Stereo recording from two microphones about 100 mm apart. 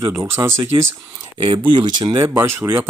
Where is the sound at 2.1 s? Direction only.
25° right (ahead or behind).